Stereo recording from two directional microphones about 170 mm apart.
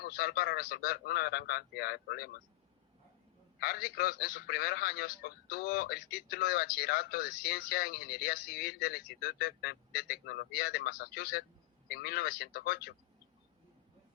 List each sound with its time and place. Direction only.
0.0 s speech: 65° left (ahead or behind)
3.6 s a man's voice: 65° left (ahead or behind)